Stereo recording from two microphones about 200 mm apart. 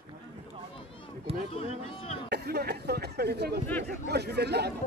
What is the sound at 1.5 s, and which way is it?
Speech, 30° left (ahead or behind).